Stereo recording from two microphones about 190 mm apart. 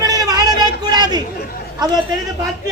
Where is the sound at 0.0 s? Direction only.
20° right (ahead or behind).